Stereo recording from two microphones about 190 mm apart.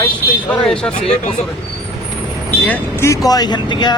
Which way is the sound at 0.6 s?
5° left (ahead or behind).